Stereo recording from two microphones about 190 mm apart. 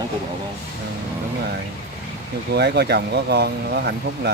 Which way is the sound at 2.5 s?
60° right (ahead or behind).